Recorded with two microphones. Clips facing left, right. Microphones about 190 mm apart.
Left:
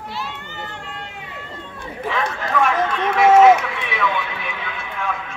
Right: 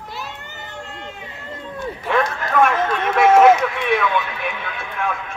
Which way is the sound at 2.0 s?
55° right (ahead or behind).